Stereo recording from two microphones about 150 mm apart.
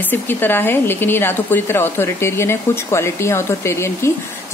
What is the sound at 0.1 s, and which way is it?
A woman's voice, 15° left (ahead or behind).